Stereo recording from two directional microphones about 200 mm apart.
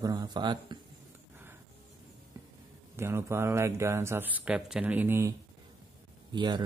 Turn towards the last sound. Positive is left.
turn(degrees=-20)  # may be behind; listen again after turning